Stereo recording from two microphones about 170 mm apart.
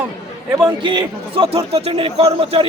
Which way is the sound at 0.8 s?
30° right (ahead or behind).